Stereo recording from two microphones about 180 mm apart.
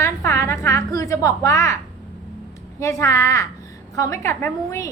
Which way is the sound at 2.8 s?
15° left (ahead or behind).